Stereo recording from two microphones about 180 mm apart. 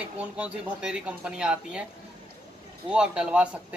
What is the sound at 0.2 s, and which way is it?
Speech, 5° right (ahead or behind).